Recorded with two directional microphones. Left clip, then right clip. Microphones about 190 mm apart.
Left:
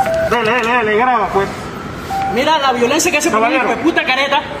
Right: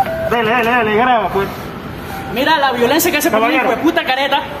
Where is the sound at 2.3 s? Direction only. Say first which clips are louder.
Right 1 dB; 20° right (ahead or behind).